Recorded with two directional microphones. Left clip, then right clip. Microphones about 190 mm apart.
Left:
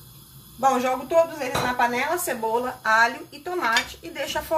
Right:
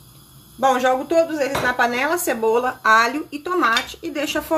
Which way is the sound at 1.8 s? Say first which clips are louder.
Right 3 dB; 55° right (ahead or behind).